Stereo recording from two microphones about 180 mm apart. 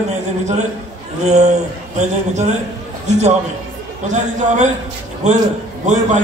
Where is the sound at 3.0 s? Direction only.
40° right (ahead or behind).